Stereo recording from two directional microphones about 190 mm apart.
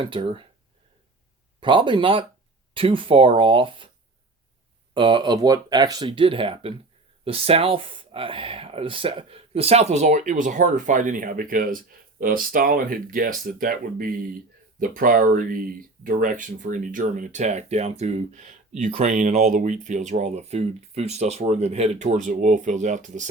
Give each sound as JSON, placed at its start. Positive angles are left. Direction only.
{"t": 0.0, "sound": "speech", "side_deg": -25}
{"t": 1.6, "sound": "speech", "side_deg": -25}
{"t": 4.9, "sound": "speech", "side_deg": -25}